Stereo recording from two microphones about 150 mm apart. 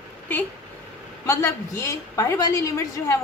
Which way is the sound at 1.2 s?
20° left (ahead or behind).